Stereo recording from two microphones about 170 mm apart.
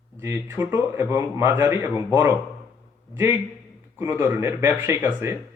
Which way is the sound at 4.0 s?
15° right (ahead or behind).